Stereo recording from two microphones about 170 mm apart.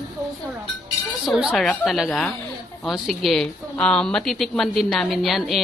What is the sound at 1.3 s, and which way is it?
Speech, centre (ahead or behind).